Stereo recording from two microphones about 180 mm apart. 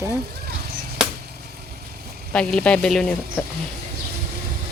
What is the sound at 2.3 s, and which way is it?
Speech, 5° left (ahead or behind).